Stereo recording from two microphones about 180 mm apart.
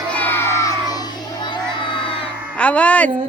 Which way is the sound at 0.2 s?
10° left (ahead or behind).